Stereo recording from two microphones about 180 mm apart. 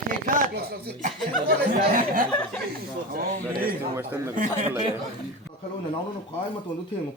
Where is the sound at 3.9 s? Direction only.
15° right (ahead or behind).